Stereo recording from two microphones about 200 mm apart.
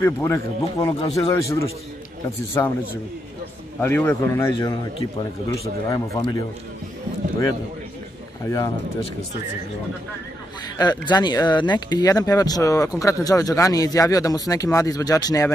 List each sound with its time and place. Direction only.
0.0 s speech: 15° left (ahead or behind)
1.3 s speech: 15° left (ahead or behind)
3.8 s speech: 10° left (ahead or behind)
5.9 s speech: 20° left (ahead or behind)
8.5 s speech: 15° left (ahead or behind)
10.8 s speech: 20° left (ahead or behind)